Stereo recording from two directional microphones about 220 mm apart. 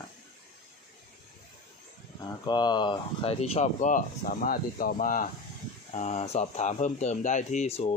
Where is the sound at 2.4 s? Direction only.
20° left (ahead or behind).